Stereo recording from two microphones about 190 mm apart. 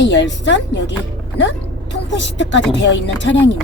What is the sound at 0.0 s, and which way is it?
Speech, 70° left (ahead or behind).